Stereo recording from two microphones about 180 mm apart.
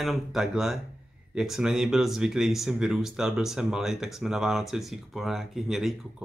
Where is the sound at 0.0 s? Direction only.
Centre (ahead or behind).